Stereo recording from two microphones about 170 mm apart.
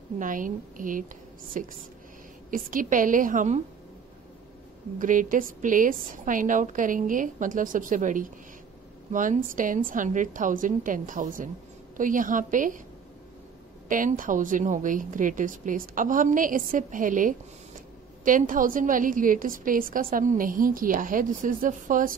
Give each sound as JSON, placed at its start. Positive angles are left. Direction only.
{"t": 0.2, "sound": "a woman's voice", "side_deg": -50}
{"t": 4.9, "sound": "a woman's voice", "side_deg": -50}
{"t": 13.8, "sound": "a woman's voice", "side_deg": -50}